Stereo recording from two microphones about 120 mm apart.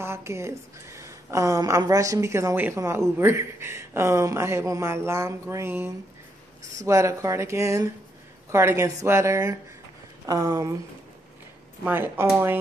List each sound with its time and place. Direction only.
0.0 s a woman's voice: 20° right (ahead or behind)
11.8 s speech: 20° right (ahead or behind)